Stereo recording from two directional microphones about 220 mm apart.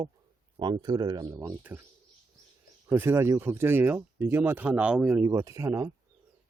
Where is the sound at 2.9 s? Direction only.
10° right (ahead or behind).